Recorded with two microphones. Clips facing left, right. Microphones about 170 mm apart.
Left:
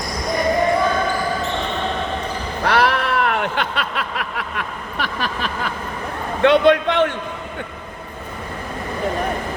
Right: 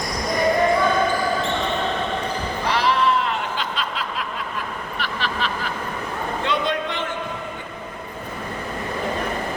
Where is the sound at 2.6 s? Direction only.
65° left (ahead or behind); by 5.5 s 50° left (ahead or behind).